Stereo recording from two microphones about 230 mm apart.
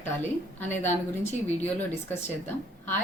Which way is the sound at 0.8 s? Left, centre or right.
Centre.